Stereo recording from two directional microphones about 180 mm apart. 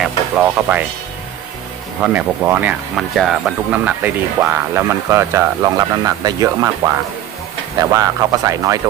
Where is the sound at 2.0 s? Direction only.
10° right (ahead or behind).